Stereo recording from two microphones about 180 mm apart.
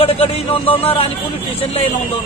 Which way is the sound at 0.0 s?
30° left (ahead or behind).